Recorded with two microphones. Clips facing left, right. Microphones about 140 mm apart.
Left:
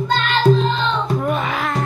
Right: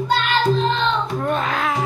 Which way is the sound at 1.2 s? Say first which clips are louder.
Even; 5° left (ahead or behind).